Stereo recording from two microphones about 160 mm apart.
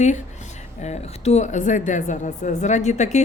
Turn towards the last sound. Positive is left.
turn(degrees=45)  # may be behind; listen again after turning